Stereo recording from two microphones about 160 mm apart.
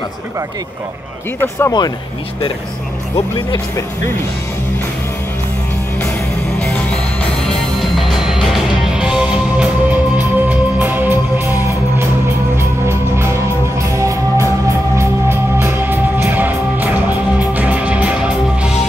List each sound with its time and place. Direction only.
1.6 s speech: 25° left (ahead or behind)
7.4 s music: centre (ahead or behind)